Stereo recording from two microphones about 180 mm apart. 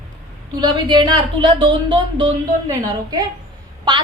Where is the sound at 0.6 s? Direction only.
25° right (ahead or behind).